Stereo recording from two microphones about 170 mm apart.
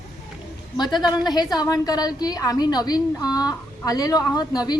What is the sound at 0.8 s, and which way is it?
A woman's voice, 25° left (ahead or behind).